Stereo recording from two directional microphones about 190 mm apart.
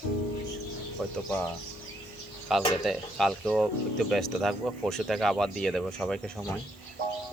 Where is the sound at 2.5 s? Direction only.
Centre (ahead or behind).